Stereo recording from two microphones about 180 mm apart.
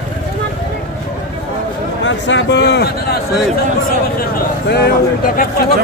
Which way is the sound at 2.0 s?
85° left.